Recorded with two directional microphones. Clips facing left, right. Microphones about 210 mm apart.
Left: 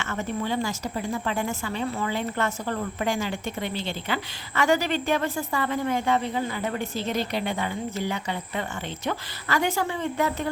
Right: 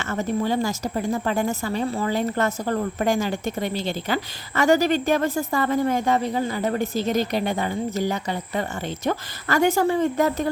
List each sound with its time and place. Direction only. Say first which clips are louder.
0.0 s a woman's voice: right 5 dB; 40° right (ahead or behind)